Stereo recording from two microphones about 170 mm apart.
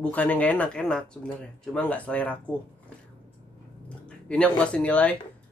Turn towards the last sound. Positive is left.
turn(degrees=10)  # may be behind; listen again after turning